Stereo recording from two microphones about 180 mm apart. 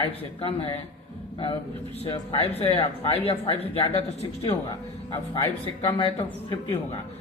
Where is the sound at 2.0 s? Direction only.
35° left (ahead or behind).